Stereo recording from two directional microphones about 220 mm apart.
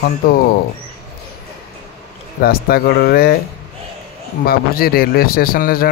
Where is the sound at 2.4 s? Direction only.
45° left (ahead or behind).